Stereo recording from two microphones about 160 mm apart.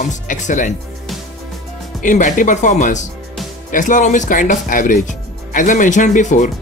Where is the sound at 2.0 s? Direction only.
55° left (ahead or behind).